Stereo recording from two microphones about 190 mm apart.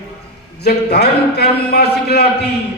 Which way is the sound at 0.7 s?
60° left (ahead or behind).